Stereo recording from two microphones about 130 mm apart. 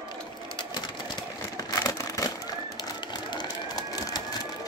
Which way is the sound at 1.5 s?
30° left (ahead or behind).